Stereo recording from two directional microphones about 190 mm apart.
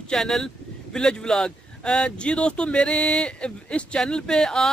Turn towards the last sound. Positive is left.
turn(degrees=5)  # may be behind; listen again after turning